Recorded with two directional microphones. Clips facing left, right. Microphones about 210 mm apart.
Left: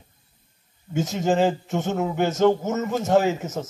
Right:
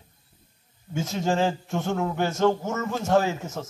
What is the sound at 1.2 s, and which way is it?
A man's voice, 20° left (ahead or behind).